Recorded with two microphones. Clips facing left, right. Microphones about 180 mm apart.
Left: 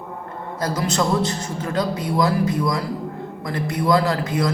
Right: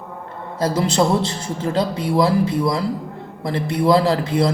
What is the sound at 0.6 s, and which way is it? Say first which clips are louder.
A man's voice: right 4 dB; 30° right (ahead or behind).